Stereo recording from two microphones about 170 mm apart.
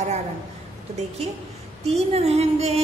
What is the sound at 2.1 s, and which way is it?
Speech, 35° right (ahead or behind).